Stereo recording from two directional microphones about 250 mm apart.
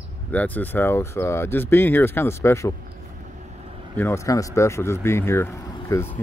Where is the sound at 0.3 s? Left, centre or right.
Centre.